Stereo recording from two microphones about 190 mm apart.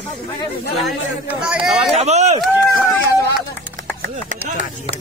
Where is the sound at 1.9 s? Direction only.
35° right (ahead or behind).